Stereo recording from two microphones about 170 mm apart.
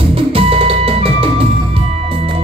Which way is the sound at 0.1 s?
35° right (ahead or behind).